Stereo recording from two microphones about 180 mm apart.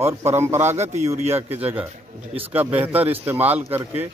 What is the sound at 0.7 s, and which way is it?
Speech, 40° right (ahead or behind).